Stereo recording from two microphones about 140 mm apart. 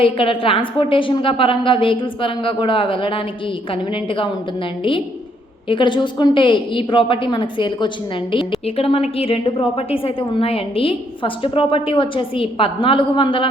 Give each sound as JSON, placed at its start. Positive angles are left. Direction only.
{"t": 0.0, "sound": "a woman's voice", "side_deg": 40}
{"t": 4.8, "sound": "a woman's voice", "side_deg": 40}